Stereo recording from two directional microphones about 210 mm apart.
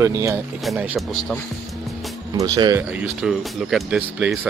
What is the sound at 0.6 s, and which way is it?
Speech, 5° right (ahead or behind).